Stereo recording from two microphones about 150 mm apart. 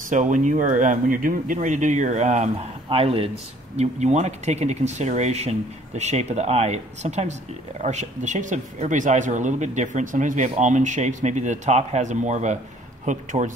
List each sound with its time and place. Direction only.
0.1 s speech: 55° right (ahead or behind)